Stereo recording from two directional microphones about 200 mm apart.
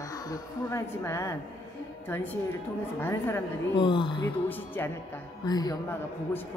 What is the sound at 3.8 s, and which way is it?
Speech, 25° left (ahead or behind).